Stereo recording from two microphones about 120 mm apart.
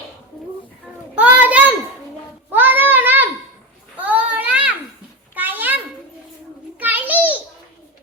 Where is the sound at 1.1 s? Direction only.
10° right (ahead or behind).